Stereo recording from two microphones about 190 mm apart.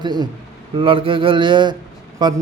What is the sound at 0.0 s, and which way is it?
Speech, 20° right (ahead or behind).